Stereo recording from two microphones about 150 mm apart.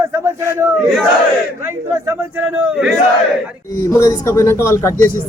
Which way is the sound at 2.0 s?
10° right (ahead or behind).